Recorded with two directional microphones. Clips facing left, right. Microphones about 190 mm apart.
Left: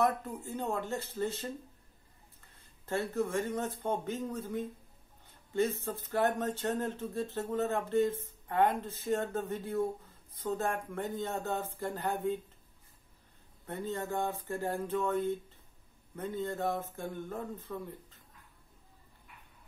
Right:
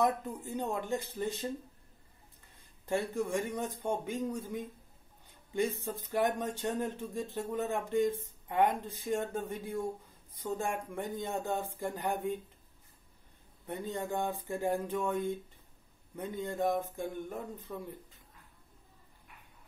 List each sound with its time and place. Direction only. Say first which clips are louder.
0.0 s speech: even; 15° right (ahead or behind)
2.5 s speech: right 2 dB; 15° right (ahead or behind)
13.7 s speech: even; 15° right (ahead or behind)